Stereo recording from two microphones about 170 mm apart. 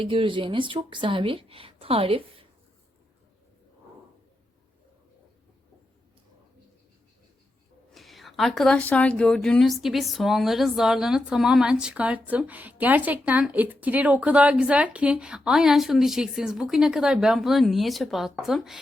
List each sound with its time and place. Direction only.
0.0 s a woman's voice: 30° right (ahead or behind)
7.9 s speech: centre (ahead or behind)